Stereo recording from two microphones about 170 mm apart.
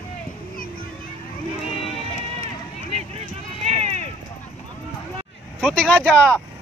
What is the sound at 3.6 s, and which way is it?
Run, 40° right (ahead or behind).